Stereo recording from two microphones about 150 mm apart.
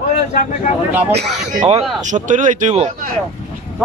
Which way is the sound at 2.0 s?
55° right (ahead or behind).